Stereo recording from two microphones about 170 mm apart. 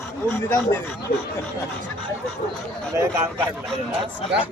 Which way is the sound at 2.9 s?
15° right (ahead or behind).